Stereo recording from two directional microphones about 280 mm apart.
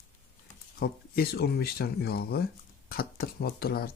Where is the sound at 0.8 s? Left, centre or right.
Left.